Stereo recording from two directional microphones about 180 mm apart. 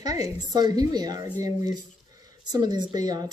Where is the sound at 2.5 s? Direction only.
20° right (ahead or behind).